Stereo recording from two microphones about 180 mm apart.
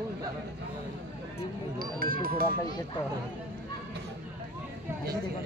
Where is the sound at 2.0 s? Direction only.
55° right (ahead or behind).